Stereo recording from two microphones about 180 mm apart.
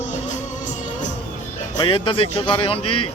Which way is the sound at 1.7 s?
25° left (ahead or behind).